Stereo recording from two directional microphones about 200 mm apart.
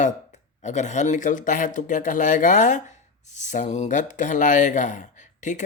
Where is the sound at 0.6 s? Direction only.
35° left (ahead or behind).